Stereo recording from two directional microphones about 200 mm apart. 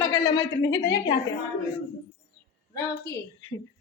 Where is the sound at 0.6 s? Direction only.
60° left (ahead or behind).